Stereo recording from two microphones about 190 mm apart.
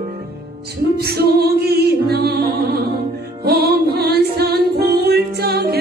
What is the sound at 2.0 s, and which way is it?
Music, 55° right (ahead or behind).